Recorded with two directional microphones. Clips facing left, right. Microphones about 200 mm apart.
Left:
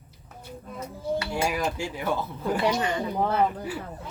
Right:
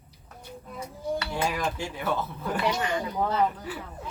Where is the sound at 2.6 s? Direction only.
30° left (ahead or behind).